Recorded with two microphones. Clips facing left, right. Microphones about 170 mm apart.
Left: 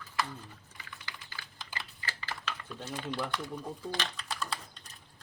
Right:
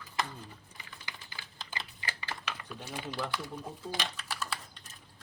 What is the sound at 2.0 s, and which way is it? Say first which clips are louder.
Speech: even; 15° right (ahead or behind).